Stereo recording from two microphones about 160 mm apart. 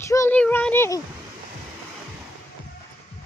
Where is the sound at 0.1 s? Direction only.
20° left (ahead or behind).